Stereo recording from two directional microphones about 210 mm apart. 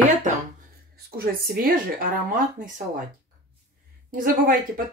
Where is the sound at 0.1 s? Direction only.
35° right (ahead or behind).